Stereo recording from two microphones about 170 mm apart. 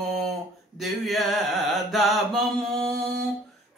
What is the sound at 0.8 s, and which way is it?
Mantra, centre (ahead or behind).